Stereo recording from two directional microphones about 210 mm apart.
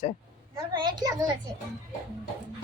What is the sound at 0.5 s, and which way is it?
Speech, 20° right (ahead or behind).